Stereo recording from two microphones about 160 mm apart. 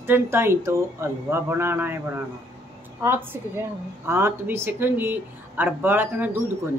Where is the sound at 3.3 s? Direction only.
15° right (ahead or behind).